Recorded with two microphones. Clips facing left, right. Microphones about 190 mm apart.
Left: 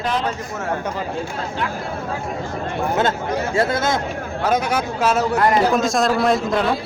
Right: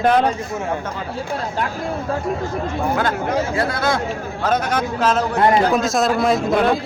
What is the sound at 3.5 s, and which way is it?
Speech, 25° left (ahead or behind).